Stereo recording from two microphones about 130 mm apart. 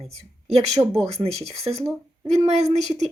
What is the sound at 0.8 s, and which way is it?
Speech, 20° right (ahead or behind).